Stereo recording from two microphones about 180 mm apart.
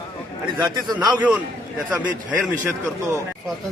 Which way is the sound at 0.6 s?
25° right (ahead or behind).